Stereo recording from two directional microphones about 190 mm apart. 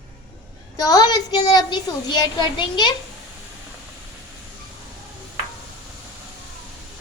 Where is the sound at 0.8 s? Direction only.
20° left (ahead or behind).